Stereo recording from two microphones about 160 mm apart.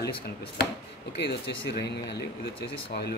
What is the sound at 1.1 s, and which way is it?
Speech, 90° left.